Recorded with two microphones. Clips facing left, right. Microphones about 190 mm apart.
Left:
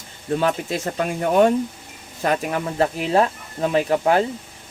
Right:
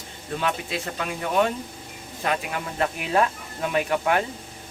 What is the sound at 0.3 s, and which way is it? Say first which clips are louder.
Speech: left 6 dB; 40° left (ahead or behind).